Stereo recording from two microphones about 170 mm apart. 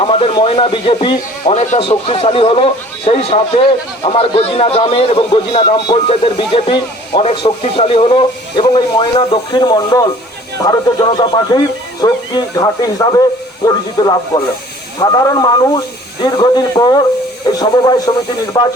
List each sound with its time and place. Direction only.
0.0 s speech: 35° left (ahead or behind)